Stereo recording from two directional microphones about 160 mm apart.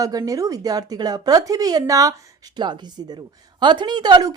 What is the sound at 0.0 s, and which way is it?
A woman's voice, 20° right (ahead or behind).